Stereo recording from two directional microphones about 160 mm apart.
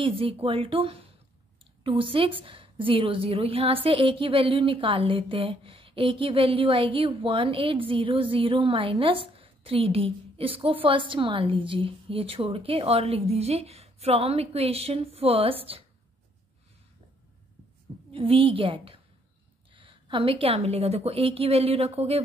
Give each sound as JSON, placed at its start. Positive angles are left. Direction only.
{"t": 0.0, "sound": "a woman's voice", "side_deg": -35}
{"t": 18.1, "sound": "a woman's voice", "side_deg": -35}